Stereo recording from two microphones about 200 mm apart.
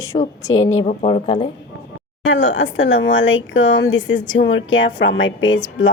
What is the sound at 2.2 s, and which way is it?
Speech, 75° left (ahead or behind).